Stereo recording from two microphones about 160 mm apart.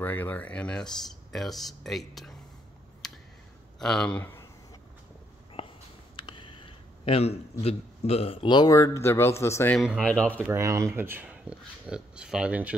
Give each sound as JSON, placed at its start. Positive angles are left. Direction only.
{"t": 0.0, "sound": "speech", "side_deg": 10}
{"t": 3.0, "sound": "a sound", "side_deg": 0}
{"t": 3.8, "sound": "speech", "side_deg": 5}
{"t": 5.6, "sound": "a sound", "side_deg": 35}
{"t": 6.1, "sound": "speech", "side_deg": 30}
{"t": 9.8, "sound": "speech", "side_deg": 5}
{"t": 10.5, "sound": "speech", "side_deg": -20}